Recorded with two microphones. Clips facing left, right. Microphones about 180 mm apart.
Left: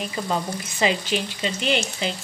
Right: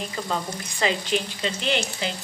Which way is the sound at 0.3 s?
15° left (ahead or behind).